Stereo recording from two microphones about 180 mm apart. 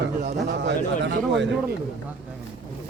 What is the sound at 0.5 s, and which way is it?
Speech, 75° right (ahead or behind).